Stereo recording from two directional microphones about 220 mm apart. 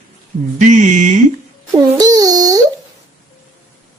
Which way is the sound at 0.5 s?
35° right (ahead or behind).